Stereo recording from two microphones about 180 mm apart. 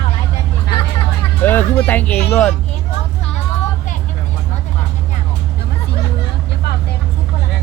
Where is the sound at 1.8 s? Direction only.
10° left (ahead or behind).